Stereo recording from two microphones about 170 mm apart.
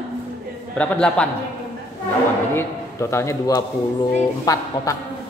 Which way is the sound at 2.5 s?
15° left (ahead or behind).